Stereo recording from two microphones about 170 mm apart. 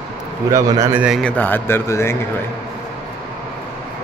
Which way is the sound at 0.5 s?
20° right (ahead or behind).